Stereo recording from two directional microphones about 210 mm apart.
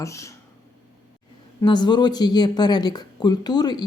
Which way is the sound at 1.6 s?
20° left (ahead or behind).